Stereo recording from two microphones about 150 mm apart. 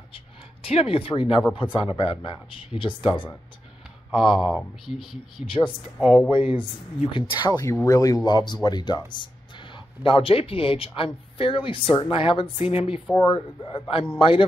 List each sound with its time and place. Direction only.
0.7 s speech: 40° left (ahead or behind)
4.2 s speech: centre (ahead or behind)
6.5 s speech: 35° left (ahead or behind)